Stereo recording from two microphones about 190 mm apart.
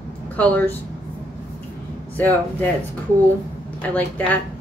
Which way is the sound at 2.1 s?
10° left (ahead or behind).